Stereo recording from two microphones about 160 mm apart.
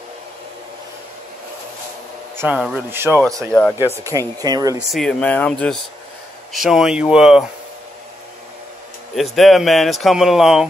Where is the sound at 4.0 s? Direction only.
20° right (ahead or behind).